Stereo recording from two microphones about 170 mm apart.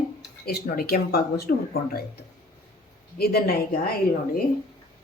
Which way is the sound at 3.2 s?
65° left (ahead or behind).